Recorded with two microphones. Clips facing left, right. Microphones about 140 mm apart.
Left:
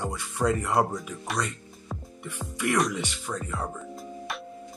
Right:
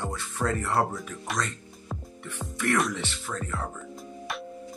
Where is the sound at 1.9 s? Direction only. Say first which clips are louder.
Even; centre (ahead or behind).